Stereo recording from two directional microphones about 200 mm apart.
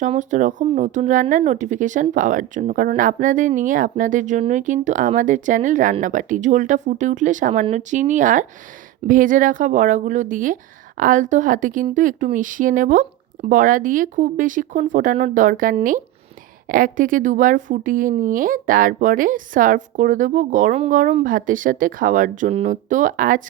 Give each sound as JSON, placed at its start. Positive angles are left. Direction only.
{"t": 0.0, "sound": "speech", "side_deg": -40}